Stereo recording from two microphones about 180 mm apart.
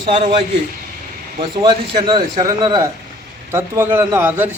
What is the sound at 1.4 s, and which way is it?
A man's voice, 25° right (ahead or behind).